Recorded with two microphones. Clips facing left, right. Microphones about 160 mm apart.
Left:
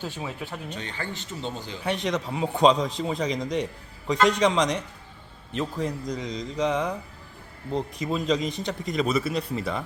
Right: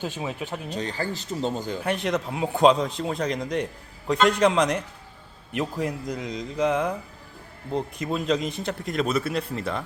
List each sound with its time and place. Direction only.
0.0 s speech: 15° right (ahead or behind)
0.7 s speech: 35° right (ahead or behind)
1.8 s a man's voice: centre (ahead or behind)